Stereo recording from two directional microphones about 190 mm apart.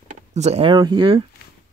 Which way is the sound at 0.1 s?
35° right (ahead or behind).